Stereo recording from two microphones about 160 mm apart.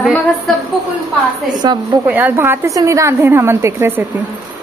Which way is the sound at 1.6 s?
25° right (ahead or behind).